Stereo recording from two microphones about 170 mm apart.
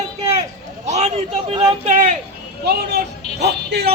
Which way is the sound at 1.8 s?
45° right (ahead or behind).